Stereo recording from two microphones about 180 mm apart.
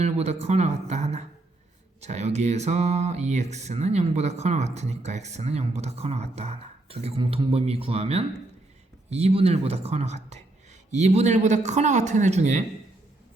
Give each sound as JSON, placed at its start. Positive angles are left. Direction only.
{"t": 0.0, "sound": "speech", "side_deg": -35}